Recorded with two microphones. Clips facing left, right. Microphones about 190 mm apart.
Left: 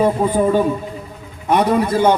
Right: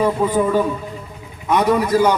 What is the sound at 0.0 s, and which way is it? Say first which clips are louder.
A man's voice: left 2 dB; 30° left (ahead or behind).